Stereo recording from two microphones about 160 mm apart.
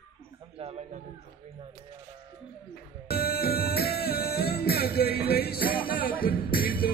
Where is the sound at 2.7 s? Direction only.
75° left (ahead or behind).